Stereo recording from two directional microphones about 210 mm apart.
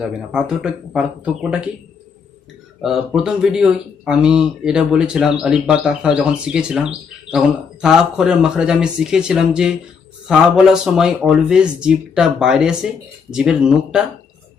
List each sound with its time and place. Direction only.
0.0 s speech: 5° right (ahead or behind)
2.8 s speech: centre (ahead or behind)